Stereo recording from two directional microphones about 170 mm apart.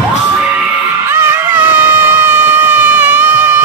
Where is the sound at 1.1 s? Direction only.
10° right (ahead or behind).